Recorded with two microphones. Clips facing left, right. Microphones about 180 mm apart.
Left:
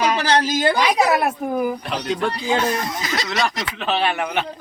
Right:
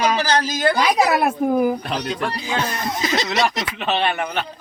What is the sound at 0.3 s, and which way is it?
Speech, 25° left (ahead or behind).